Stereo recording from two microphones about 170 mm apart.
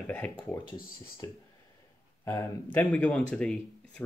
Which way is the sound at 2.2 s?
20° left (ahead or behind).